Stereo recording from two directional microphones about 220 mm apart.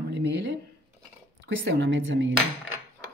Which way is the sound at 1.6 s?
55° right (ahead or behind).